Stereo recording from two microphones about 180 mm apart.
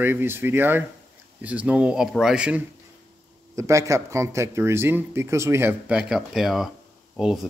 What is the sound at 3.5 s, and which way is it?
Speech, 15° right (ahead or behind).